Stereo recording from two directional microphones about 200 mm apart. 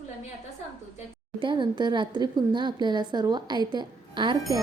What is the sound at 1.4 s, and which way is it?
A woman's voice, 25° right (ahead or behind).